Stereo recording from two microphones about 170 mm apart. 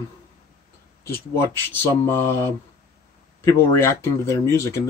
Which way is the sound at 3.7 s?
15° left (ahead or behind).